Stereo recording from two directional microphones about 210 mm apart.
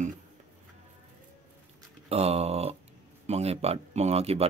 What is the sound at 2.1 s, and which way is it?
Speech, 30° right (ahead or behind).